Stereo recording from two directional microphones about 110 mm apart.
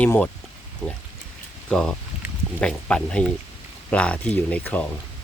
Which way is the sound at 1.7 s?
5° left (ahead or behind).